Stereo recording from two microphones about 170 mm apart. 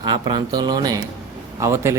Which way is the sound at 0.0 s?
30° right (ahead or behind).